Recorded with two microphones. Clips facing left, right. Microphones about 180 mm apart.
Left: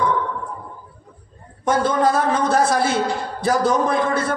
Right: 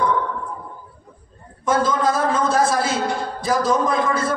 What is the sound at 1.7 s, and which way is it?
Speech, 60° left (ahead or behind).